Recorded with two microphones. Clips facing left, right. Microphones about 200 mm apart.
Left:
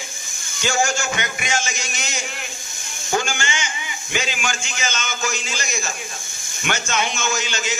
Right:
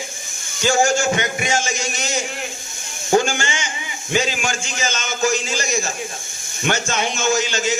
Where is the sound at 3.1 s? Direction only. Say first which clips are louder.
Right 6 dB; 35° right (ahead or behind).